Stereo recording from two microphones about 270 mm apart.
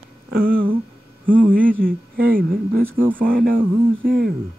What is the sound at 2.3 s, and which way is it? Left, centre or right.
Speech, right.